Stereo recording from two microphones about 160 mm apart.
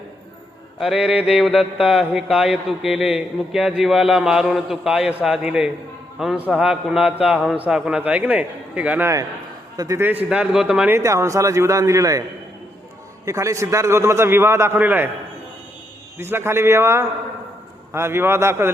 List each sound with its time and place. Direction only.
0.8 s mantra: centre (ahead or behind)
6.5 s a man's voice: 5° right (ahead or behind)
13.2 s a man's voice: 20° right (ahead or behind)
16.1 s a man's voice: 15° right (ahead or behind)